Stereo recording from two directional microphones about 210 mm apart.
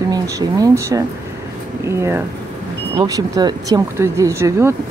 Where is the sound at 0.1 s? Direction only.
15° right (ahead or behind).